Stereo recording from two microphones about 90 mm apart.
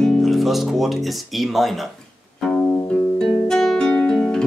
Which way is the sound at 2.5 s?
25° left (ahead or behind).